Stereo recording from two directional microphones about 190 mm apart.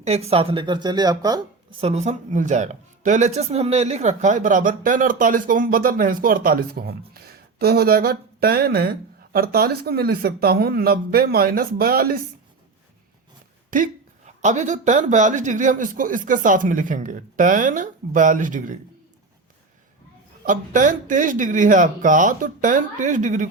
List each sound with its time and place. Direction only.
0.0 s speech: 35° right (ahead or behind)
1.8 s speech: 35° right (ahead or behind); by 12.2 s 50° right (ahead or behind)
13.7 s speech: 45° right (ahead or behind)
20.4 s speech: 45° right (ahead or behind)